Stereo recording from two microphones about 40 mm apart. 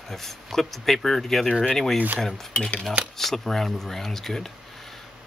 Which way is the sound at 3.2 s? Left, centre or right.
Centre.